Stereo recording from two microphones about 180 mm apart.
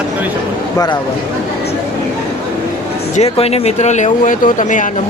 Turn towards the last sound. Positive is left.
turn(degrees=45)  # may be behind; listen again after turning